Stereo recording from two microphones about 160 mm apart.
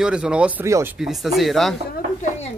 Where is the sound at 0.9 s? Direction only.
Centre (ahead or behind).